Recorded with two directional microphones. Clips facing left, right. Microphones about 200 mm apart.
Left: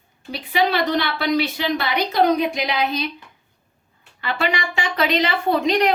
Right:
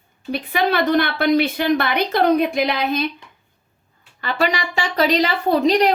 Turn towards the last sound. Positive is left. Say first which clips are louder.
# right 3 dB
turn(degrees=-35)  # may be behind; listen again after turning